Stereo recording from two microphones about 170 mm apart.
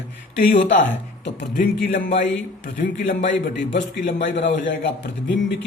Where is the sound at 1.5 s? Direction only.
55° left (ahead or behind).